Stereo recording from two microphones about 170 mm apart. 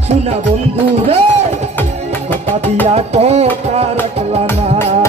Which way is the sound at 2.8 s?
40° right (ahead or behind).